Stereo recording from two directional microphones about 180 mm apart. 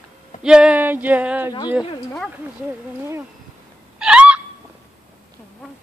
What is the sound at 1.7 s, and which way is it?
Speech, 5° right (ahead or behind).